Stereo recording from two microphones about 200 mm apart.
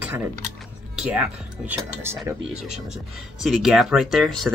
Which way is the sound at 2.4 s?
30° right (ahead or behind).